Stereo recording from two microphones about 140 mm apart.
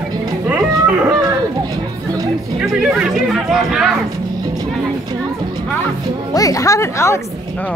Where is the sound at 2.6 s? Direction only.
5° right (ahead or behind).